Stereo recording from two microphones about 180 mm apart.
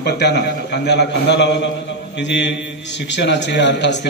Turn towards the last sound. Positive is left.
turn(degrees=75)  # may be behind; listen again after turning